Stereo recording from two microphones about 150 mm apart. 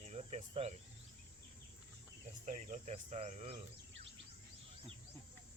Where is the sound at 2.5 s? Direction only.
50° right (ahead or behind).